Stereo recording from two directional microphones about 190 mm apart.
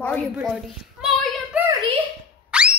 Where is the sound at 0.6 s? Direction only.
Centre (ahead or behind).